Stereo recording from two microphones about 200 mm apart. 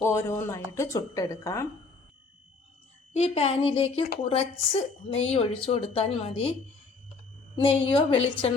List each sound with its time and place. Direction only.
0.0 s speech: 15° left (ahead or behind)
3.1 s a woman's voice: 30° left (ahead or behind)
7.5 s a woman's voice: 25° left (ahead or behind)